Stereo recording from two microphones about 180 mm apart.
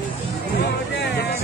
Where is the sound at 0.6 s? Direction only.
80° left.